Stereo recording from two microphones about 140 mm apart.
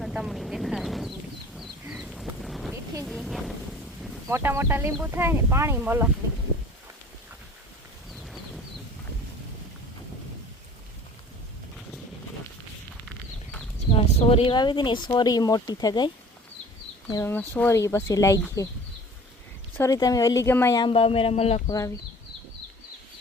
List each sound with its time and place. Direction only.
0.0 s vehicle: 5° right (ahead or behind)
1.5 s a sound: 5° right (ahead or behind)
4.3 s speech: 20° right (ahead or behind)
13.9 s speech: 45° left (ahead or behind)
17.1 s speech: 20° left (ahead or behind)
19.7 s speech: 20° left (ahead or behind)
20.7 s speech: 40° left (ahead or behind)
21.7 s speech: 25° left (ahead or behind)